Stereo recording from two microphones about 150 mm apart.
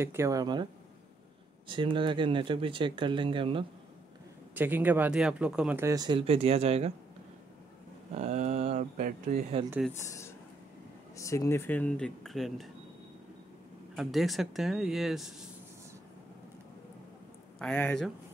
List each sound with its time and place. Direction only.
0.0 s speech: 20° right (ahead or behind)
1.7 s speech: 35° right (ahead or behind)
4.6 s speech: 10° right (ahead or behind)
5.9 s speech: 30° right (ahead or behind)
8.2 s speech: 45° right (ahead or behind)
11.1 s speech: 20° left (ahead or behind); by 12.6 s centre (ahead or behind)
13.9 s speech: centre (ahead or behind)
17.6 s speech: 5° left (ahead or behind)